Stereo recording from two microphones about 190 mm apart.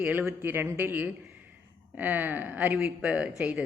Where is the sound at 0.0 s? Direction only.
10° right (ahead or behind).